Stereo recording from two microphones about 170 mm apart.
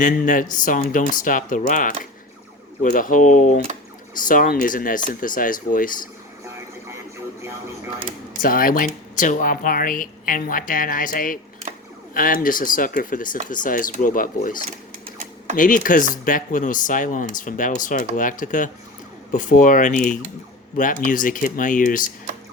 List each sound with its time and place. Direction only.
0.0 s speech: 50° left (ahead or behind)
8.4 s speech: 55° left (ahead or behind)